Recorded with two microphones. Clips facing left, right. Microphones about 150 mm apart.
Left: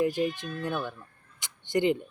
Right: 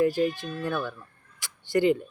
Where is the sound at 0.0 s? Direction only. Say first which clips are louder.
Right 3 dB; 20° left (ahead or behind).